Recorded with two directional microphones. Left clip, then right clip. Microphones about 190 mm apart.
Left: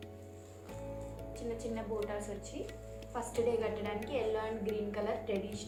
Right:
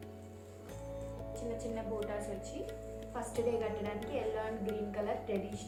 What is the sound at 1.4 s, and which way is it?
A woman's voice, 15° left (ahead or behind).